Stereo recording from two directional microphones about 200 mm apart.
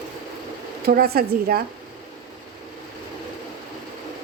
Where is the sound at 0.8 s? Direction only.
50° right (ahead or behind).